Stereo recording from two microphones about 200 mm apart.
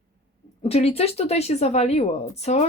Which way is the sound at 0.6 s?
30° left (ahead or behind).